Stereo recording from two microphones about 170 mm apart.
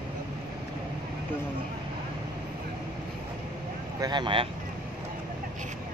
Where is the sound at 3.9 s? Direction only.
25° right (ahead or behind).